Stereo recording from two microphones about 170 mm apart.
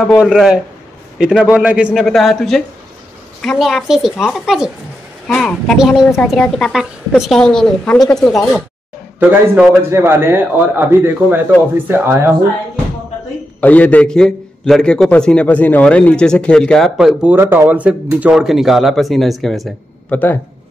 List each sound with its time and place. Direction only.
0.2 s a man's voice: 5° right (ahead or behind)
9.6 s a man's voice: 15° right (ahead or behind)
13.6 s a man's voice: 10° left (ahead or behind)